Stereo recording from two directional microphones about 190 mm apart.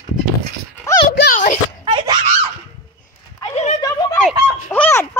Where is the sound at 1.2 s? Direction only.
45° left (ahead or behind).